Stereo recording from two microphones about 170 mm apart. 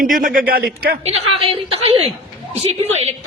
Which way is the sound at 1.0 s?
35° right (ahead or behind).